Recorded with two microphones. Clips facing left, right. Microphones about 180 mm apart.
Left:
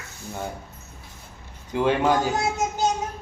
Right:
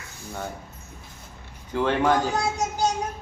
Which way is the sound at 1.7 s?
15° left (ahead or behind).